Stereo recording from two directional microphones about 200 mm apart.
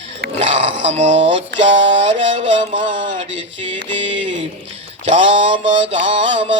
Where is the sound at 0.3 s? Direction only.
35° right (ahead or behind).